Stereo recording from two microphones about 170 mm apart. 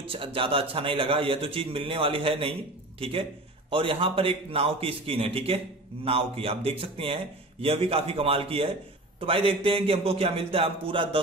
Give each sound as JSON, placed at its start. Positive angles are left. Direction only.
{"t": 0.0, "sound": "a man's voice", "side_deg": -35}